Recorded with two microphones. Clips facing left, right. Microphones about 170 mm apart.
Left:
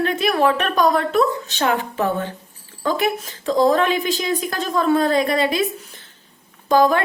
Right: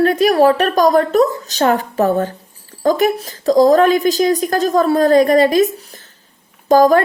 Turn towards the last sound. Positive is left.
turn(degrees=-40)  # may be behind; listen again after turning